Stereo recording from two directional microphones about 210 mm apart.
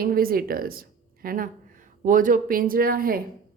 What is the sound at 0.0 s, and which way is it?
A woman's voice, 45° right (ahead or behind).